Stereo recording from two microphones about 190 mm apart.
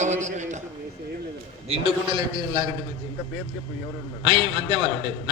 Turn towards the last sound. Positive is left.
turn(degrees=-30)  # may be behind; listen again after turning